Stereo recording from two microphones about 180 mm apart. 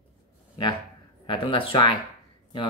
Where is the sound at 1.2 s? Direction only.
30° left (ahead or behind).